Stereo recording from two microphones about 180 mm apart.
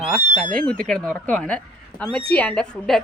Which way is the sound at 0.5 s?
5° left (ahead or behind).